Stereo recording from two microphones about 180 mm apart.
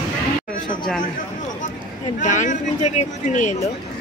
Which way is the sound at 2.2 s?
45° left (ahead or behind).